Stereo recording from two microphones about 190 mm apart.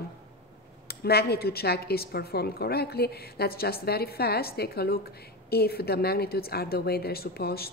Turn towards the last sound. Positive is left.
turn(degrees=55)  # may be behind; listen again after turning